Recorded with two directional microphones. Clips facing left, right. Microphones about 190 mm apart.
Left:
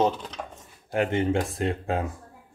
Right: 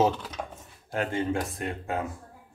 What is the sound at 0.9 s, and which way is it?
Speech, 20° left (ahead or behind).